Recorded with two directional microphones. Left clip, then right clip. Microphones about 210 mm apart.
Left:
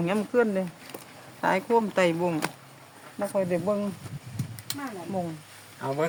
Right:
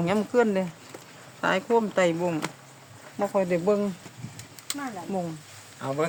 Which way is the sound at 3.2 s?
15° right (ahead or behind).